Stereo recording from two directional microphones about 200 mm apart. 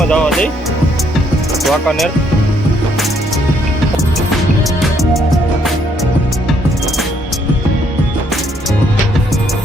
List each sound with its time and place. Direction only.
0.1 s speech: 5° left (ahead or behind)
1.6 s speech: centre (ahead or behind)